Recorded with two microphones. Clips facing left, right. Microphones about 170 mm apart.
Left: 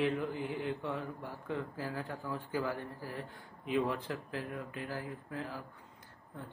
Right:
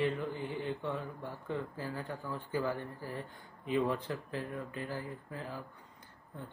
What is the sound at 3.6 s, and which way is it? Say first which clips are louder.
Mantra: right 1 dB; 5° left (ahead or behind).